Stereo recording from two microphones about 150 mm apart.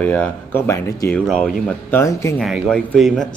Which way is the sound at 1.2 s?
5° left (ahead or behind).